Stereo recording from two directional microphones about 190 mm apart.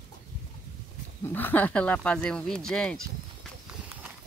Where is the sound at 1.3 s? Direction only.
10° left (ahead or behind).